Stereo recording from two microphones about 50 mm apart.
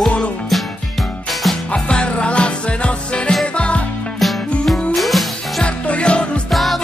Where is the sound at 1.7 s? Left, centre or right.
Left.